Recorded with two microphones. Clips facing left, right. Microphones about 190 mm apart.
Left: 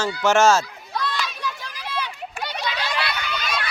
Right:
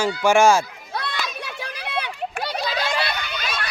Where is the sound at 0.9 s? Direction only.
60° right (ahead or behind).